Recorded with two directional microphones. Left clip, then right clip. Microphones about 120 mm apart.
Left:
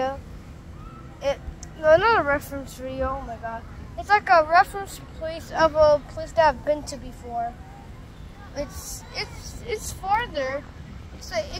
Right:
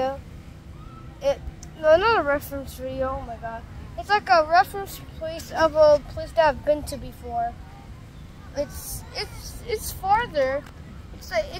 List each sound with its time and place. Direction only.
1.2 s speech: 20° right (ahead or behind)
5.8 s speech: 35° right (ahead or behind)
8.5 s speech: 35° right (ahead or behind)